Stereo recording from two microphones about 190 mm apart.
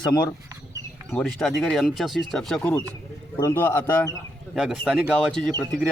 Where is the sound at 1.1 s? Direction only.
Centre (ahead or behind).